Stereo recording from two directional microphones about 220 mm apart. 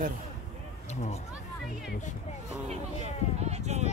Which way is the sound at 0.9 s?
30° left (ahead or behind).